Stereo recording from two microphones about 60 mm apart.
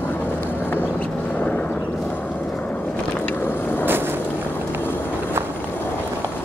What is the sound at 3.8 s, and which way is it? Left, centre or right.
Boat, right.